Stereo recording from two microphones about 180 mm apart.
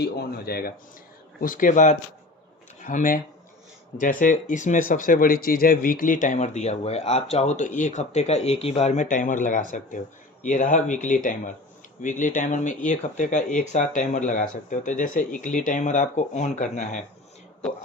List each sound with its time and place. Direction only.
0.0 s speech: 60° left (ahead or behind); by 17.0 s 40° left (ahead or behind)